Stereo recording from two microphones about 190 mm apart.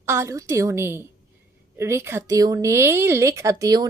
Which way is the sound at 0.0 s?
15° right (ahead or behind).